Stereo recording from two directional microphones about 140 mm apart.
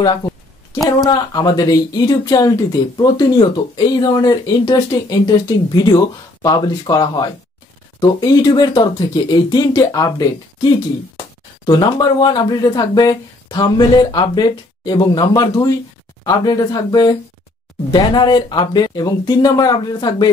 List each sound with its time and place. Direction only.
0.8 s speech: 25° left (ahead or behind)